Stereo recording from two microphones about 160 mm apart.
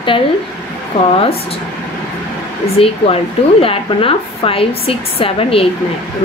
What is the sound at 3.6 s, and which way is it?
A woman's voice, 35° left (ahead or behind).